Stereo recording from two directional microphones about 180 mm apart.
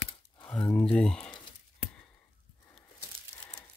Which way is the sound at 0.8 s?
5° left (ahead or behind).